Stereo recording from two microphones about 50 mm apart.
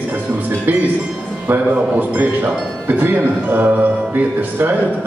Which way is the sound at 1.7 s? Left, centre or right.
Right.